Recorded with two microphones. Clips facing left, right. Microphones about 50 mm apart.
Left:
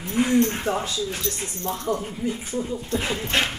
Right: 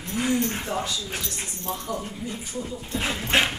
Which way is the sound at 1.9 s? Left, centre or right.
Left.